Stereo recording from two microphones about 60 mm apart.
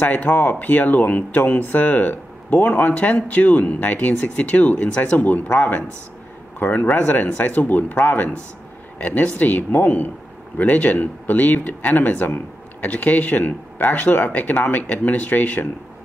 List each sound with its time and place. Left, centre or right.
0.0 s speech: left